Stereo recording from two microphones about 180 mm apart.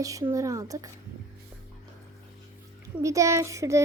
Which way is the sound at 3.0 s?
15° right (ahead or behind).